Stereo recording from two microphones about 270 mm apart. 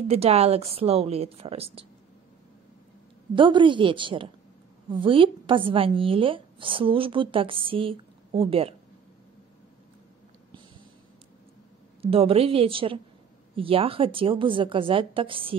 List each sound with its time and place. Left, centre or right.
0.1 s a woman's voice: right
3.3 s a woman's voice: centre
12.0 s a woman's voice: right